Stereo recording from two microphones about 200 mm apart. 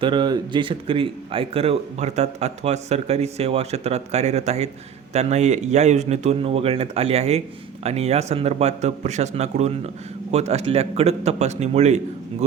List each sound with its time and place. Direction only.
0.0 s a man's voice: 25° right (ahead or behind)